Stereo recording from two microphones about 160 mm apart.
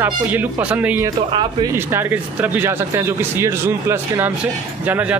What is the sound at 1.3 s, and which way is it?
Speech, 30° right (ahead or behind).